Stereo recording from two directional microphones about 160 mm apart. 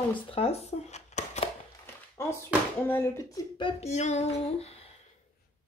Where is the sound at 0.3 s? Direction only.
40° left (ahead or behind).